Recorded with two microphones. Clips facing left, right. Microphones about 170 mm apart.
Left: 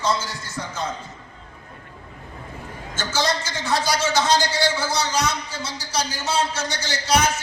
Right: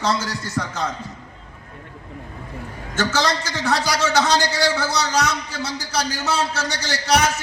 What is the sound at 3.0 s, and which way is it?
A man's voice, 65° right (ahead or behind).